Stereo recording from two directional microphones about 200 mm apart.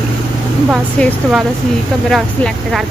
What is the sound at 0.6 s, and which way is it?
Speech, centre (ahead or behind).